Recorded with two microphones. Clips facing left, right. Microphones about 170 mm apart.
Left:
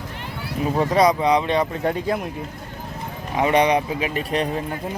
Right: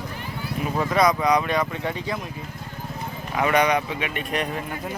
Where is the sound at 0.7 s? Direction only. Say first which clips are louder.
Left 3 dB; 30° left (ahead or behind).